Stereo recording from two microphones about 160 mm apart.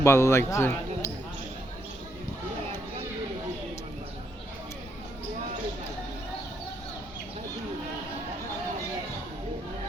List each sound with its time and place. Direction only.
0.0 s speech: 15° left (ahead or behind)